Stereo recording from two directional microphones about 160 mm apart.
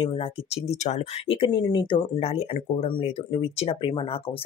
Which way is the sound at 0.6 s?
45° left (ahead or behind).